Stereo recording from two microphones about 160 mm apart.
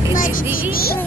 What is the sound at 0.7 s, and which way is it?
Speech, 70° left (ahead or behind).